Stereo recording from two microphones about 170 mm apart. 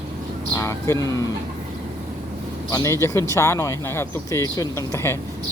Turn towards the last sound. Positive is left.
turn(degrees=15)  # may be behind; listen again after turning